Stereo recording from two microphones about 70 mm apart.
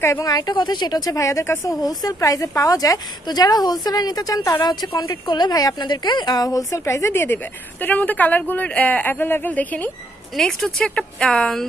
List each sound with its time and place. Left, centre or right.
0.2 s speech: left
1.8 s speech: left
2.1 s speech: left
4.6 s speech: left
7.8 s speech: left
10.3 s speech: centre